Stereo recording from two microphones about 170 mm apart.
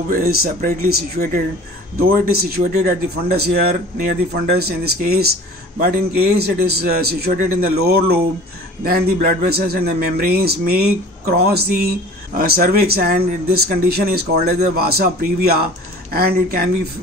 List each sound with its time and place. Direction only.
0.1 s a man's voice: 60° right (ahead or behind)